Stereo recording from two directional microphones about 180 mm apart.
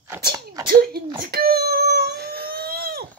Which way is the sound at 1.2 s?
60° right (ahead or behind).